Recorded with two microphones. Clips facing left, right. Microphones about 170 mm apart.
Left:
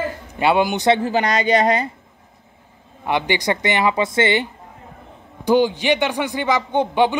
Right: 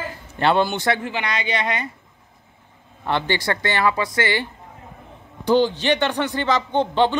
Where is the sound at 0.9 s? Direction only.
35° left (ahead or behind).